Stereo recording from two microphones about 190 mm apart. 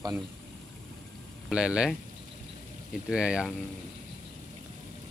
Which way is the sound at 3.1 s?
5° right (ahead or behind).